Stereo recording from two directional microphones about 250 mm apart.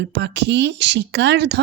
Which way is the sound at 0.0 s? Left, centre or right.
Right.